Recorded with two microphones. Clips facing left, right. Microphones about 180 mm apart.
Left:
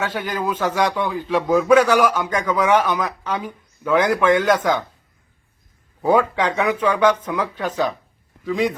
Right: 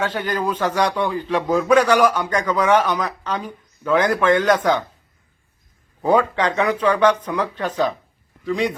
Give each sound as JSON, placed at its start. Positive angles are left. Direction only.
{"t": 0.0, "sound": "a man's voice", "side_deg": 10}
{"t": 6.0, "sound": "a man's voice", "side_deg": 10}